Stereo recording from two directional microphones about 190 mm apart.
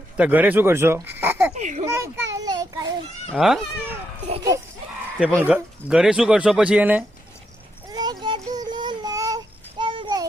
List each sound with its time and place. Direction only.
0.2 s speech: 10° right (ahead or behind)
1.5 s a child's voice: 40° right (ahead or behind)
1.9 s a child's voice: 15° right (ahead or behind)
3.3 s speech: centre (ahead or behind)
4.5 s a child's voice: 15° right (ahead or behind)
5.4 s speech: 5° right (ahead or behind)
7.9 s a sound: 20° right (ahead or behind)